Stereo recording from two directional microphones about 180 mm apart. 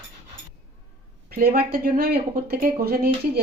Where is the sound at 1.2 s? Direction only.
55° right (ahead or behind).